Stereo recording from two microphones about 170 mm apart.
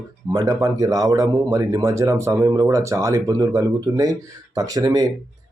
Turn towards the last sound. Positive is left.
turn(degrees=-20)  # may be behind; listen again after turning